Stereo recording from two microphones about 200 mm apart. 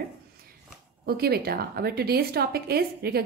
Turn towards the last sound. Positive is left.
turn(degrees=-50)  # may be behind; listen again after turning